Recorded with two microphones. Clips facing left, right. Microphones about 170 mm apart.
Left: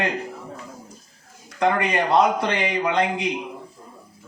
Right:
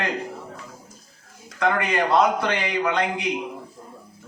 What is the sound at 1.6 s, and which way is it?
A man's voice, 20° left (ahead or behind).